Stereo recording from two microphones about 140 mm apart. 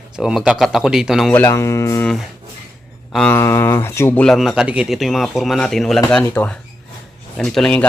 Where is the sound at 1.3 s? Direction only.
15° left (ahead or behind).